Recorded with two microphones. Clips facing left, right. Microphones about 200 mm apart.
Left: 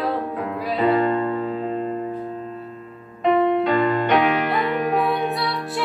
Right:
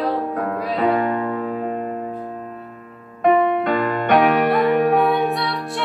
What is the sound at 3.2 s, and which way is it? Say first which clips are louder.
Music: right 1 dB; 50° right (ahead or behind).